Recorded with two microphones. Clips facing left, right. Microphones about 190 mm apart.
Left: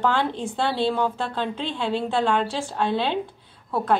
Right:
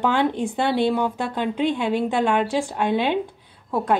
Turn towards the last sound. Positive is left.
turn(degrees=-15)  # may be behind; listen again after turning